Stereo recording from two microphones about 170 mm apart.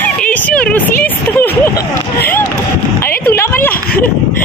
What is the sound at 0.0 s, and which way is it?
Speech, 10° left (ahead or behind).